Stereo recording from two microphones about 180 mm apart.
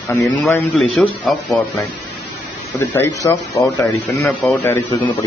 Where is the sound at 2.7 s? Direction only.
15° left (ahead or behind).